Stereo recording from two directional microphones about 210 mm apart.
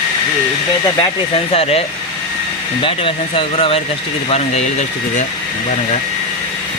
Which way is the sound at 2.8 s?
25° left (ahead or behind).